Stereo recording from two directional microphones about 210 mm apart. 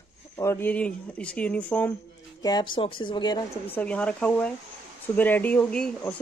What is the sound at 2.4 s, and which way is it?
Speech, 20° left (ahead or behind).